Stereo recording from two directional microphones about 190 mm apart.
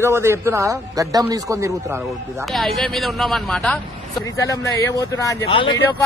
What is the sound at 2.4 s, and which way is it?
A man's voice, centre (ahead or behind).